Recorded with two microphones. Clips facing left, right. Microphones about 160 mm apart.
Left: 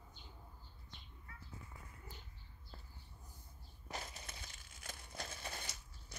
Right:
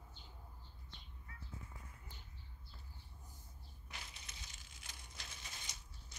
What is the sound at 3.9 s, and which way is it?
Crushing, 45° left (ahead or behind).